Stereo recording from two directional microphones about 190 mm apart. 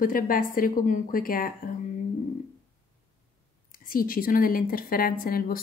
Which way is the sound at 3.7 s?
50° left (ahead or behind).